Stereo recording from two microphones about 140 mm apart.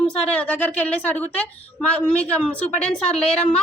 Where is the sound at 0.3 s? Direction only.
10° left (ahead or behind).